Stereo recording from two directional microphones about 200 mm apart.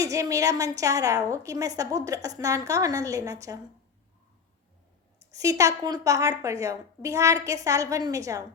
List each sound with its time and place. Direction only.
0.0 s a woman's voice: 15° right (ahead or behind)
5.3 s a woman's voice: 15° right (ahead or behind)